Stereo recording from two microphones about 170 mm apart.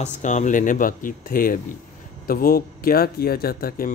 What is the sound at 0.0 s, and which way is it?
Speech, 45° left (ahead or behind).